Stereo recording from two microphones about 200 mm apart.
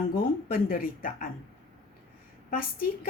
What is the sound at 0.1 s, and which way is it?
Speech, 45° left (ahead or behind).